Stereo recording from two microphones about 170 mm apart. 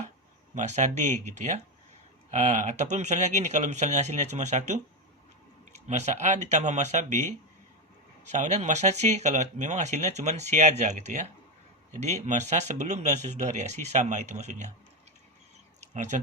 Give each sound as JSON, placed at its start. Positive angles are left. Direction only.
{"t": 0.5, "sound": "speech", "side_deg": -45}
{"t": 5.9, "sound": "speech", "side_deg": -45}